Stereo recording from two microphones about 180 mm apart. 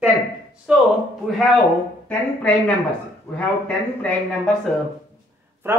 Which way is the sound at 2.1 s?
5° left (ahead or behind).